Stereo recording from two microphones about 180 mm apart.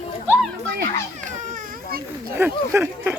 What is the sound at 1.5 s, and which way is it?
Baby cry, 55° right (ahead or behind).